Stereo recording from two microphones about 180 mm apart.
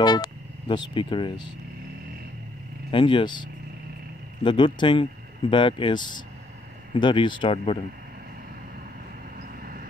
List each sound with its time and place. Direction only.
0.0 s speech: 25° left (ahead or behind)
2.9 s speech: 25° left (ahead or behind)
4.5 s speech: 25° left (ahead or behind)
9.4 s vehicle: 55° right (ahead or behind)